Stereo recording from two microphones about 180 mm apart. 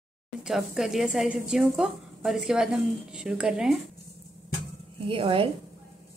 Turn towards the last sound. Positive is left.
turn(degrees=-30)  # may be behind; listen again after turning